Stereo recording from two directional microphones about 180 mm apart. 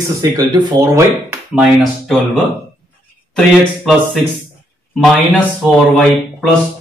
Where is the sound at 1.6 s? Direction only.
5° right (ahead or behind).